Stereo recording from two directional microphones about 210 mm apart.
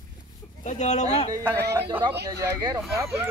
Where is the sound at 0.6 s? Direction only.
35° left (ahead or behind).